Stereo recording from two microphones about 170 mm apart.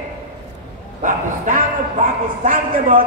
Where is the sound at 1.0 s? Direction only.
50° right (ahead or behind).